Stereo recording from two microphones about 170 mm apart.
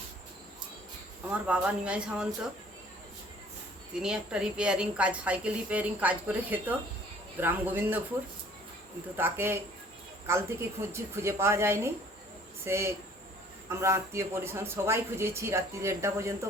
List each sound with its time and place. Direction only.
1.5 s speech: 5° right (ahead or behind)
3.9 s a woman's voice: 5° right (ahead or behind)
9.1 s a woman's voice: 10° right (ahead or behind)